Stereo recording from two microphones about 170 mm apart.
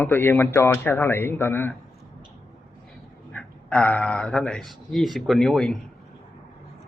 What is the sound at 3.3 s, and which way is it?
Speech, 5° left (ahead or behind).